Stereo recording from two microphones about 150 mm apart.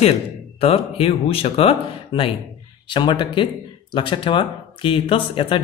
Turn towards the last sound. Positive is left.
turn(degrees=35)  # may be behind; listen again after turning